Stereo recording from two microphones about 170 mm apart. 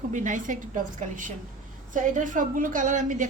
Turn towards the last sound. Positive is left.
turn(degrees=-50)  # may be behind; listen again after turning